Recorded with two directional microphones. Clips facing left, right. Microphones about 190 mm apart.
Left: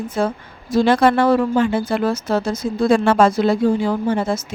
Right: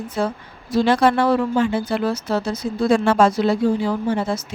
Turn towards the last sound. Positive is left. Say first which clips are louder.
# left 2 dB
turn(degrees=50)  # may be behind; listen again after turning